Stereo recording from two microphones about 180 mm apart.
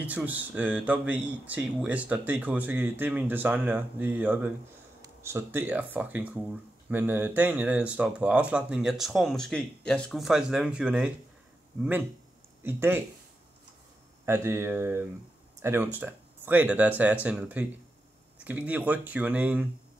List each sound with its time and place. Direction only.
0.0 s speech: 10° right (ahead or behind)
12.6 s speech: 10° right (ahead or behind)
14.2 s speech: 15° right (ahead or behind)